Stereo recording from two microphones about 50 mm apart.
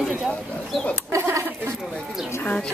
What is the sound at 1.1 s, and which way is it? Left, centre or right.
Speech, right.